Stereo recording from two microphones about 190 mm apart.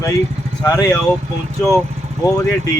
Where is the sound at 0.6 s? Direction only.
20° left (ahead or behind).